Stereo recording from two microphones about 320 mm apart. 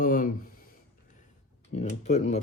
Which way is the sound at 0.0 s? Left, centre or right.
Left.